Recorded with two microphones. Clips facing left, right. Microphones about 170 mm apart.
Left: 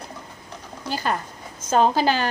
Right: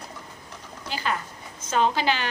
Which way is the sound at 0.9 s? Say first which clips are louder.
Left 3 dB; 40° left (ahead or behind).